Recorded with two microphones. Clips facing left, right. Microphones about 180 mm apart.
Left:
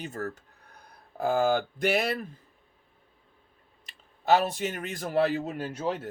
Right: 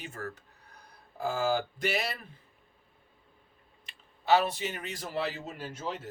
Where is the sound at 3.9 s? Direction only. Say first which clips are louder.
Left 2 dB; 45° left (ahead or behind).